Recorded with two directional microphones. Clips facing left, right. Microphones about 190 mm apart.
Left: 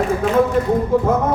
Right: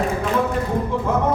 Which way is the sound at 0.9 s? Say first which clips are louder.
Left 7 dB; 45° left (ahead or behind).